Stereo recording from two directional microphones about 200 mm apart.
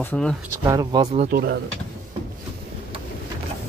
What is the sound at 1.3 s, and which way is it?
Speech, 55° right (ahead or behind).